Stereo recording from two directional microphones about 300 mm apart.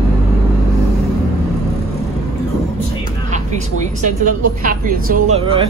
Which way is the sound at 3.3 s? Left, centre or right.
Right.